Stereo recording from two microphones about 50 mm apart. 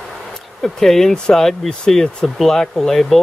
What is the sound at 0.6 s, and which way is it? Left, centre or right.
Speech, centre.